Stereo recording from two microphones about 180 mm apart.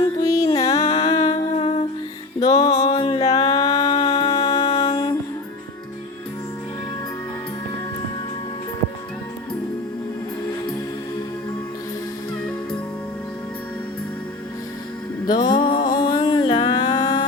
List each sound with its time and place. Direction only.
0.0 s music: 20° left (ahead or behind)
0.8 s humming: 35° left (ahead or behind)
2.4 s music: 20° left (ahead or behind)
2.6 s a sound: 35° left (ahead or behind)
3.5 s music: 20° left (ahead or behind)
3.9 s music: 35° left (ahead or behind)
15.3 s music: 25° left (ahead or behind)